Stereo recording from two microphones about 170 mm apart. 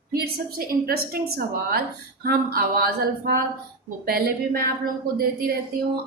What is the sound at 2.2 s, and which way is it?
A woman's voice, 60° right (ahead or behind).